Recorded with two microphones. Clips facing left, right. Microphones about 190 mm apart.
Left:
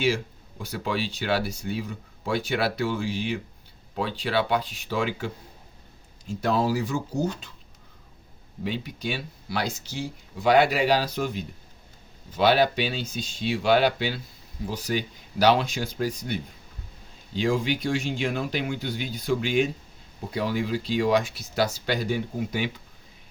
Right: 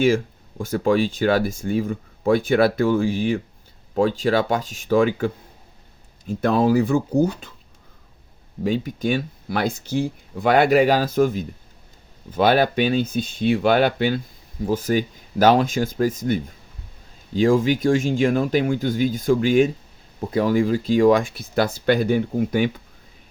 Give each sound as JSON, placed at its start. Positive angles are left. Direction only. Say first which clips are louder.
{"t": 0.6, "sound": "speech", "louder": "right 10 dB", "side_deg": -50}
{"t": 8.6, "sound": "speech", "louder": "right 8 dB", "side_deg": -45}